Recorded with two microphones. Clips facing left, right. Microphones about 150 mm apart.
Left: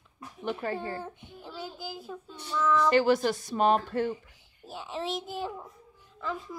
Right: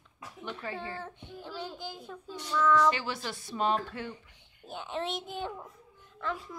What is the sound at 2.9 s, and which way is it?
Speech, 50° left (ahead or behind).